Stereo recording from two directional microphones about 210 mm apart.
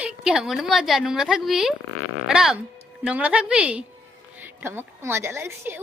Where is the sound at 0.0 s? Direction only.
5° right (ahead or behind).